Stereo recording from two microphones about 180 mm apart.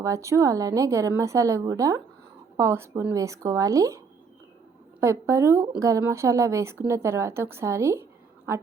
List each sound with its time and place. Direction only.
0.0 s a woman's voice: 15° right (ahead or behind)